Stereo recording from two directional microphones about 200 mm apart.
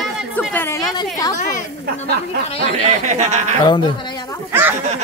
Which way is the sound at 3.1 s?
35° right (ahead or behind).